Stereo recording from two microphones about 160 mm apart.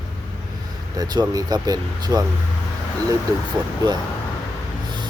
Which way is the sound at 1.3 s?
25° right (ahead or behind).